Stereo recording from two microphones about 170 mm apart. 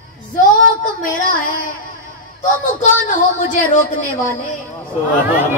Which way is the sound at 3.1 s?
50° left (ahead or behind).